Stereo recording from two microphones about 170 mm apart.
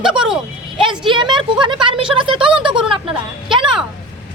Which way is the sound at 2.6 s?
30° right (ahead or behind).